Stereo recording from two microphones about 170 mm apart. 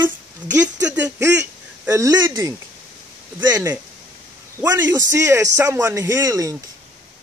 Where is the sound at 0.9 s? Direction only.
15° right (ahead or behind).